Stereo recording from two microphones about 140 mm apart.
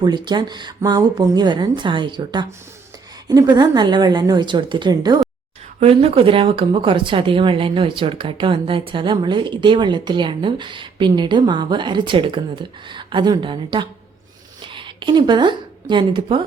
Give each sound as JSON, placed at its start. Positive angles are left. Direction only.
{"t": 0.0, "sound": "a woman's voice", "side_deg": -30}
{"t": 5.8, "sound": "speech", "side_deg": -45}